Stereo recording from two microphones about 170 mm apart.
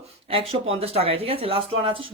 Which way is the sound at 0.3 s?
35° right (ahead or behind).